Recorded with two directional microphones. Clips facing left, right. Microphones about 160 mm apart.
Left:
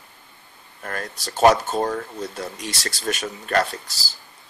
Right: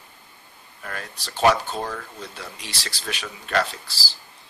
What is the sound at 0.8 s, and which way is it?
Speech, 45° left (ahead or behind).